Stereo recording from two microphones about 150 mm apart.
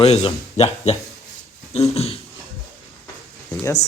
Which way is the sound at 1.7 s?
45° left (ahead or behind).